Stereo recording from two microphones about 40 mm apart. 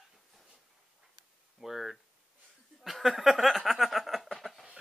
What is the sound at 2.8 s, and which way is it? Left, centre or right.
Chuckle, centre.